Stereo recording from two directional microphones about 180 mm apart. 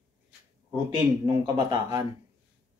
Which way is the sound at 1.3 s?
25° right (ahead or behind).